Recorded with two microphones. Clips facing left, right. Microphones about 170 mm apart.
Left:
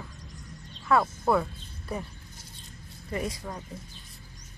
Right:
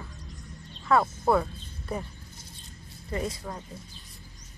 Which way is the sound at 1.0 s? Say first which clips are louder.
Right 1 dB; 10° right (ahead or behind).